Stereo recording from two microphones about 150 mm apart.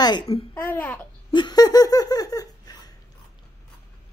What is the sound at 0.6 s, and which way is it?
Speech, 10° left (ahead or behind).